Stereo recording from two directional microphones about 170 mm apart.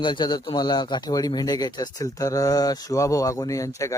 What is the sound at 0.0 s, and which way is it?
A man's voice, 25° left (ahead or behind).